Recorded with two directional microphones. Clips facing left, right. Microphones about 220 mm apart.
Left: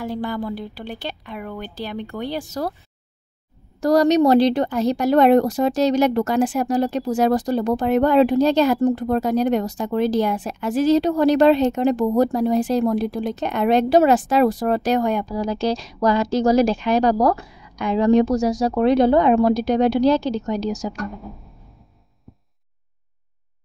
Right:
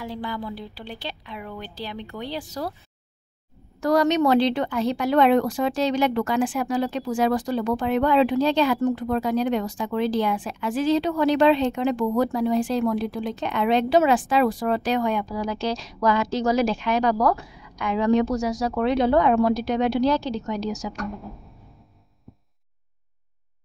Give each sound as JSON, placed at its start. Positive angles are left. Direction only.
{"t": 0.0, "sound": "speech", "side_deg": 50}
{"t": 3.8, "sound": "speech", "side_deg": 40}
{"t": 20.2, "sound": "speech", "side_deg": 35}
{"t": 20.6, "sound": "speech", "side_deg": 0}